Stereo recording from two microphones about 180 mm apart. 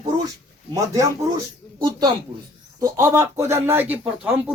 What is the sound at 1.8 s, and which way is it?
Speech, 25° right (ahead or behind).